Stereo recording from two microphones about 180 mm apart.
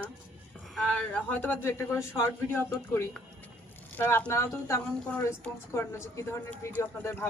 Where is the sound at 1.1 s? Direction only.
10° left (ahead or behind).